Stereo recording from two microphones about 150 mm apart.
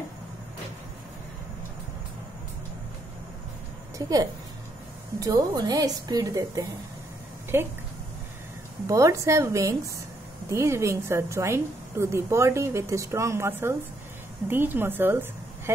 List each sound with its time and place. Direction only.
4.0 s a woman's voice: 25° right (ahead or behind)
5.2 s a woman's voice: 25° right (ahead or behind)
8.8 s a woman's voice: 20° right (ahead or behind)